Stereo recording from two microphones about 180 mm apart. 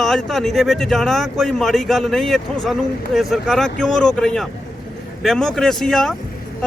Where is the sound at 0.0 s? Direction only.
Centre (ahead or behind).